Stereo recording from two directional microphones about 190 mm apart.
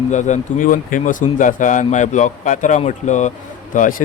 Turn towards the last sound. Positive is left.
turn(degrees=45)  # may be behind; listen again after turning